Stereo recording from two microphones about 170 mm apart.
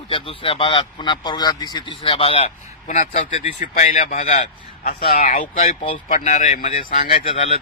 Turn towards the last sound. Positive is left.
turn(degrees=40)  # may be behind; listen again after turning